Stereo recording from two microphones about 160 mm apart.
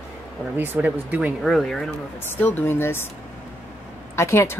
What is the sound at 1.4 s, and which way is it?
Speech, centre (ahead or behind).